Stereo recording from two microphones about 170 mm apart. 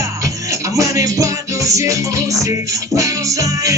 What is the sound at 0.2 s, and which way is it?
Music, 20° right (ahead or behind).